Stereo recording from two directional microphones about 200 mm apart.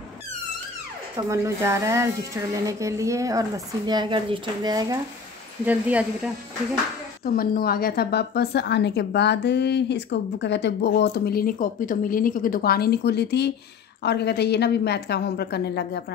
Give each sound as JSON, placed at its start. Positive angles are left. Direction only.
{"t": 1.1, "sound": "speech", "side_deg": -15}
{"t": 5.7, "sound": "speech", "side_deg": -5}
{"t": 7.2, "sound": "a woman's voice", "side_deg": 50}